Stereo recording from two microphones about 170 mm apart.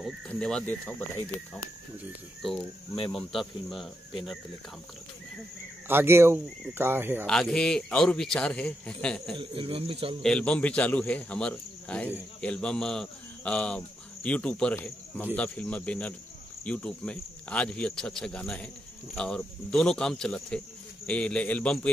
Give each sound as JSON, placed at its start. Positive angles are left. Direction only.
{"t": 0.3, "sound": "speech", "side_deg": 5}
{"t": 3.1, "sound": "speech", "side_deg": 0}
{"t": 5.9, "sound": "speech", "side_deg": -15}
{"t": 7.2, "sound": "speech", "side_deg": 5}
{"t": 9.4, "sound": "speech", "side_deg": -30}
{"t": 10.2, "sound": "speech", "side_deg": 5}